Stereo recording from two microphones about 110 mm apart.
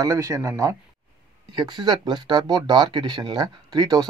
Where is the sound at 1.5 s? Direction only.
40° right (ahead or behind).